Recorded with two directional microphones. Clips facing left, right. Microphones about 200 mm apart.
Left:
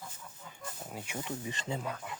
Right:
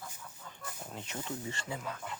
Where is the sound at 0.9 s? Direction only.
15° left (ahead or behind).